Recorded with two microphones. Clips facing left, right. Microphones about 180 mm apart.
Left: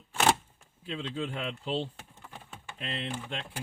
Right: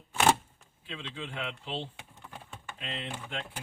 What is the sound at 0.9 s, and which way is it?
Speech, 45° left (ahead or behind).